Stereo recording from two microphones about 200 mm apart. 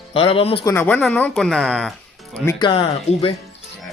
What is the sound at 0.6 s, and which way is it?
Speech, 10° left (ahead or behind).